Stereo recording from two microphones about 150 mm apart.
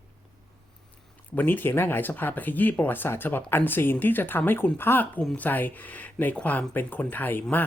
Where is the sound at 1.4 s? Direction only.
10° left (ahead or behind).